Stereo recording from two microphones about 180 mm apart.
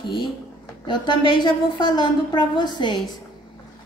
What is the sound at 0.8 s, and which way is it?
A woman's voice, 25° left (ahead or behind).